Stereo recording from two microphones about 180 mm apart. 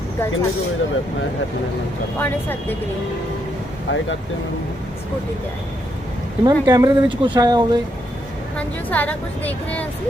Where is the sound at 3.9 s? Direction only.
90° left.